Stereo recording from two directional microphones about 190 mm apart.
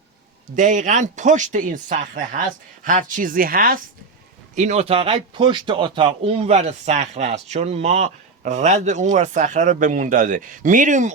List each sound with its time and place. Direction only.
0.5 s speech: 40° right (ahead or behind)
4.5 s speech: 40° right (ahead or behind)